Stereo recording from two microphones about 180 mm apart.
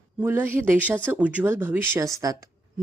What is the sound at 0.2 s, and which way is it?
A woman's voice, 10° right (ahead or behind).